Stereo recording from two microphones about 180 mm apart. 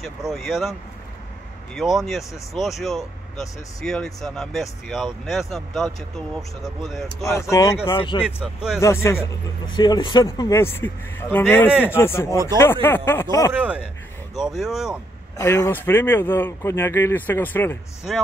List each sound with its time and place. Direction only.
0.0 s speech: centre (ahead or behind)
7.2 s speech: 15° left (ahead or behind)
7.9 s speech: 30° left (ahead or behind)
8.2 s speech: 5° right (ahead or behind)
8.7 s speech: 15° left (ahead or behind)
9.7 s speech: 25° left (ahead or behind)
13.5 s speech: 10° right (ahead or behind)
15.3 s speech: 20° left (ahead or behind)
18.1 s speech: centre (ahead or behind)